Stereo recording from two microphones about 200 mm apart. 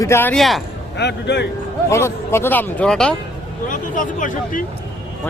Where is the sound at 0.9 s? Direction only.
60° left (ahead or behind).